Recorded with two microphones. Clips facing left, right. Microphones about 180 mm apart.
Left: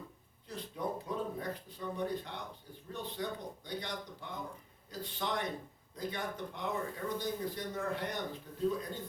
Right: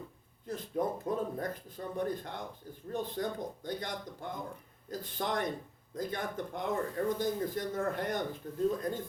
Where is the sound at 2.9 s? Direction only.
45° right (ahead or behind).